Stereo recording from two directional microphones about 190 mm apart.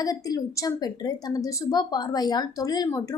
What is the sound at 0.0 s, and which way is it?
A woman's voice, 20° left (ahead or behind).